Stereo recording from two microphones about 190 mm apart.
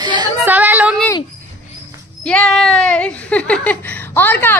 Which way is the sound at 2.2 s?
5° left (ahead or behind).